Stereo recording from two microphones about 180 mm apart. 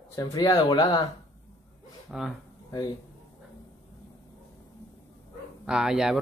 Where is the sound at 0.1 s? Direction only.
20° left (ahead or behind).